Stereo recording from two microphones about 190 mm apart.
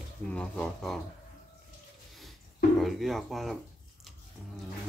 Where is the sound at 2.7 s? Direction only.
Centre (ahead or behind).